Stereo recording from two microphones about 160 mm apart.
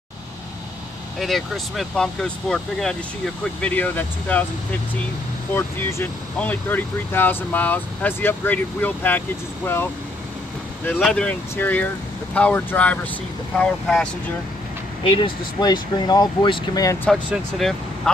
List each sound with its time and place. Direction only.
1.2 s speech: centre (ahead or behind)
5.5 s speech: 15° left (ahead or behind)
10.9 s speech: 5° left (ahead or behind)
15.0 s speech: 30° left (ahead or behind)
17.1 s speech: centre (ahead or behind)